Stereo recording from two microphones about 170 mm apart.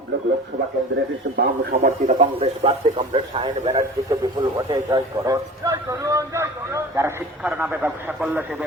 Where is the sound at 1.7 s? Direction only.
45° right (ahead or behind).